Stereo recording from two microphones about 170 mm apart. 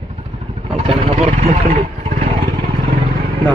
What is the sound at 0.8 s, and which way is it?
Vehicle, 40° right (ahead or behind).